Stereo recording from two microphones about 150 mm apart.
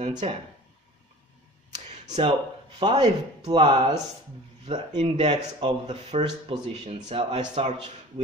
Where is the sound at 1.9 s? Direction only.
50° right (ahead or behind).